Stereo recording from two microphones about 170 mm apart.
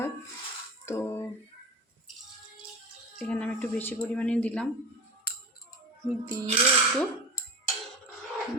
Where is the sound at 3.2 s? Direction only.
5° left (ahead or behind).